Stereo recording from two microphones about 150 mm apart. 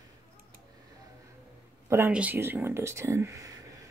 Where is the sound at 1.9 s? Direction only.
10° right (ahead or behind).